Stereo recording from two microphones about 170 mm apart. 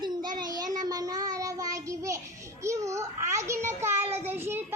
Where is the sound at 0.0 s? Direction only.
25° right (ahead or behind).